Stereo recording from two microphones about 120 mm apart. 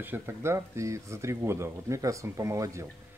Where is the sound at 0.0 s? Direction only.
20° right (ahead or behind).